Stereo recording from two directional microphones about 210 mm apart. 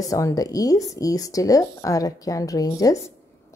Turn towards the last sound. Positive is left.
turn(degrees=15)  # may be behind; listen again after turning